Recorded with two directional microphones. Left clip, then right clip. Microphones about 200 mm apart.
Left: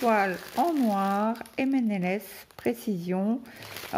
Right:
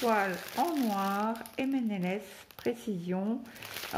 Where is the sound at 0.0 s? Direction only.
40° left (ahead or behind).